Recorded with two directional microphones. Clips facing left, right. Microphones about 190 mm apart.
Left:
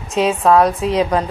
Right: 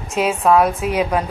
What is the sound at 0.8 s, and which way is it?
Speech, 30° left (ahead or behind).